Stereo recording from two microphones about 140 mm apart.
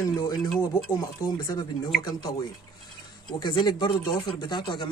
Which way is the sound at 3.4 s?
30° left (ahead or behind).